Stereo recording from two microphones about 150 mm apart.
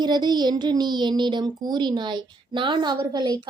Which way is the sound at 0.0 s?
30° right (ahead or behind).